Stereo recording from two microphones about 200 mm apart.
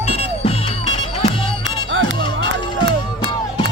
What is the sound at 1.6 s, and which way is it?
Music, 70° right (ahead or behind).